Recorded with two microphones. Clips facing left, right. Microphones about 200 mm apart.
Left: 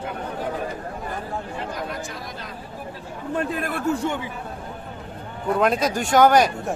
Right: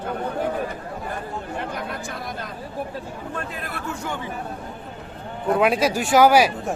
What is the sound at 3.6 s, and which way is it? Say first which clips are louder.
Speech: left 7 dB; 50° left (ahead or behind).